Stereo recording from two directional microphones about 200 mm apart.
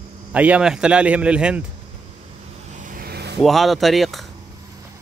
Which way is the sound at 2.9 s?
50° right (ahead or behind).